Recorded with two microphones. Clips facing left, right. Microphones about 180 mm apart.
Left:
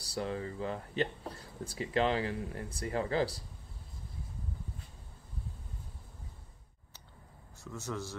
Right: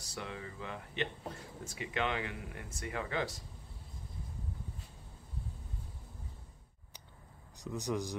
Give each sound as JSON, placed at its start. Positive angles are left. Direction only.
{"t": 0.0, "sound": "speech", "side_deg": 35}
{"t": 7.5, "sound": "speech", "side_deg": -15}